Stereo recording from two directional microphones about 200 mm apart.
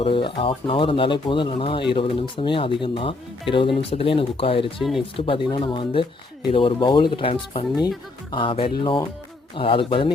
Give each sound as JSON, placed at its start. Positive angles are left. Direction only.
{"t": 0.0, "sound": "speech", "side_deg": 25}
{"t": 4.8, "sound": "speech", "side_deg": 0}
{"t": 5.1, "sound": "speech", "side_deg": 25}